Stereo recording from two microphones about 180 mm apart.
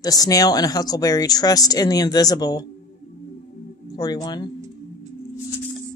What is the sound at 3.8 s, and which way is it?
Speech, 20° left (ahead or behind).